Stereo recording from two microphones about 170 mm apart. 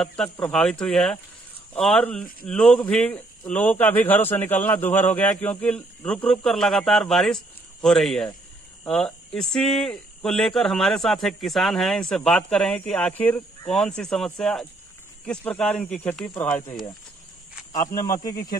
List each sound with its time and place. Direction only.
0.0 s speech: 5° left (ahead or behind)
17.7 s speech: 20° left (ahead or behind)